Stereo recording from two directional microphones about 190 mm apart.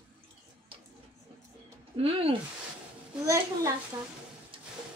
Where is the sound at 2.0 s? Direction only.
30° right (ahead or behind).